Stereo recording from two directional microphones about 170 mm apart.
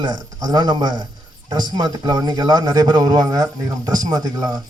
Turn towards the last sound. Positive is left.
turn(degrees=-20)  # may be behind; listen again after turning